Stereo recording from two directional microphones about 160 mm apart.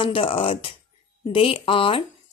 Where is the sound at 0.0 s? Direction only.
35° left (ahead or behind).